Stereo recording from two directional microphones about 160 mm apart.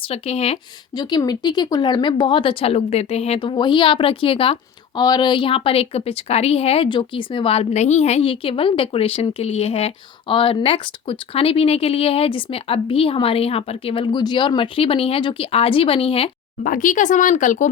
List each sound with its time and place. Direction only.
0.1 s a woman's voice: 40° left (ahead or behind)
0.9 s a woman's voice: 25° left (ahead or behind)
4.9 s a woman's voice: 25° left (ahead or behind)
16.6 s speech: 55° left (ahead or behind)